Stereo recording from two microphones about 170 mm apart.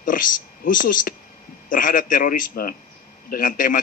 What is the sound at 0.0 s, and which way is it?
A man's voice, 55° left (ahead or behind).